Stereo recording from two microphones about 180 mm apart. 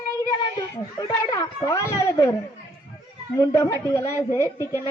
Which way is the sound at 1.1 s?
20° left (ahead or behind).